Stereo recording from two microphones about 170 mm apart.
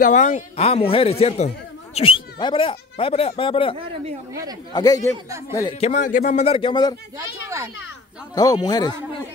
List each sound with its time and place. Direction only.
0.0 s speech: 45° left (ahead or behind)
4.3 s speech: 20° right (ahead or behind)
4.7 s speech: 20° left (ahead or behind)
5.8 s speech: 45° left (ahead or behind); by 7.0 s 25° left (ahead or behind)
7.4 s speech: 15° right (ahead or behind)
8.4 s speech: 25° left (ahead or behind)